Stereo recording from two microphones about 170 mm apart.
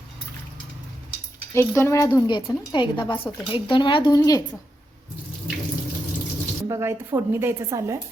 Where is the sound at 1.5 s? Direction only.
15° left (ahead or behind).